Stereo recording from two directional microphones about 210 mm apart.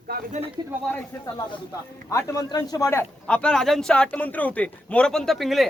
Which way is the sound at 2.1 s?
15° left (ahead or behind).